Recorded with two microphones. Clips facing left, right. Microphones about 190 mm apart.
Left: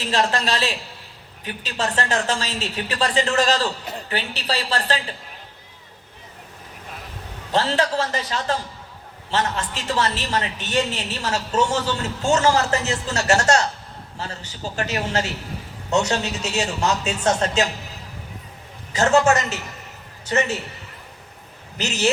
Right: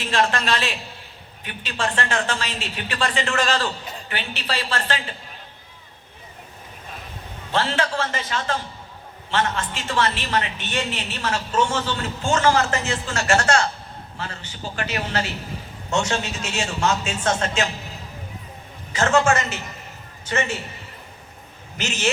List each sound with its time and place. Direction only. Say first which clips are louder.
0.0 s a woman's voice: even; 35° left (ahead or behind)
7.5 s a woman's voice: left 2 dB; 40° left (ahead or behind)
18.9 s a woman's voice: left 2 dB; 40° left (ahead or behind)
21.8 s a woman's voice: left 3 dB; 35° left (ahead or behind)